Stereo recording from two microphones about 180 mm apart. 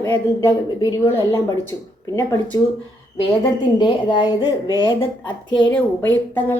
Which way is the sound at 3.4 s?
25° left (ahead or behind).